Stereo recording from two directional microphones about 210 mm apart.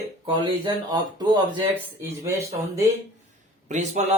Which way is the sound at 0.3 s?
20° right (ahead or behind).